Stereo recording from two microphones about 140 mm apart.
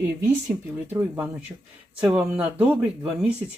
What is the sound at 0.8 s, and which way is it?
Speech, 15° right (ahead or behind).